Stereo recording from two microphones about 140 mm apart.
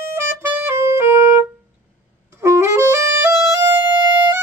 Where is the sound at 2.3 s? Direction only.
20° right (ahead or behind).